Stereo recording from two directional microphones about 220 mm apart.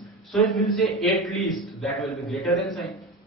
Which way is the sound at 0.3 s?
Centre (ahead or behind).